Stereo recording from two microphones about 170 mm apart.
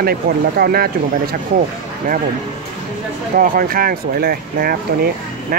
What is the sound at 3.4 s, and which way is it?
Speech, 55° right (ahead or behind).